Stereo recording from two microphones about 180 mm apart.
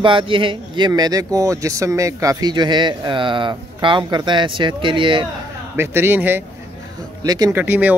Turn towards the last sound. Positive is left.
turn(degrees=-10)  # may be behind; listen again after turning